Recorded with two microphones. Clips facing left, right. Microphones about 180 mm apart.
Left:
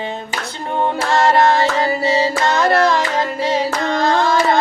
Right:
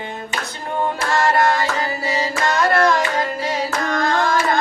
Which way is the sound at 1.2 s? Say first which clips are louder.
Left 4 dB; 25° left (ahead or behind).